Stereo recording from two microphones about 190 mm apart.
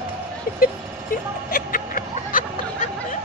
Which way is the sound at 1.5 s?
45° left (ahead or behind).